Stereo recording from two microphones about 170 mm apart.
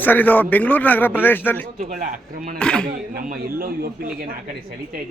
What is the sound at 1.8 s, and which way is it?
Speech, 50° right (ahead or behind).